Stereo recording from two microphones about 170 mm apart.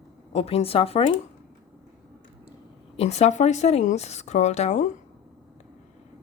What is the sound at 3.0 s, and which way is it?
Speech, 40° left (ahead or behind).